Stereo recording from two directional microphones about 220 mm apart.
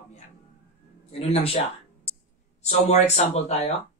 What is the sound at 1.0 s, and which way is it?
Speech, 30° left (ahead or behind).